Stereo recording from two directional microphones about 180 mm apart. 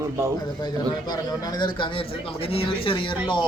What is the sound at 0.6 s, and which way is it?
Speech, 20° left (ahead or behind).